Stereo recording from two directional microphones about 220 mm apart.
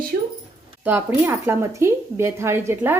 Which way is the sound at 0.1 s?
50° right (ahead or behind).